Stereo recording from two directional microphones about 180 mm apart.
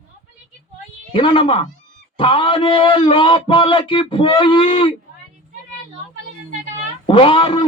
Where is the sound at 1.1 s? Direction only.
30° left (ahead or behind).